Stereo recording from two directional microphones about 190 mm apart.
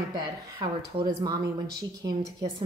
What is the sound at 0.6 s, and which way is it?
Speech, 25° right (ahead or behind).